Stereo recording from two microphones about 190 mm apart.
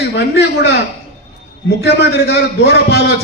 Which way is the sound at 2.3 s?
55° left (ahead or behind).